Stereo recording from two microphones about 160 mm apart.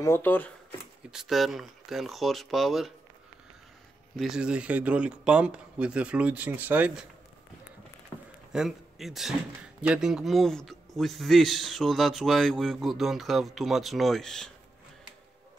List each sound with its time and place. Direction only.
0.0 s speech: 15° left (ahead or behind)
1.1 s speech: centre (ahead or behind)
4.2 s speech: 5° right (ahead or behind)
8.1 s a sound: 25° left (ahead or behind)
8.5 s speech: centre (ahead or behind)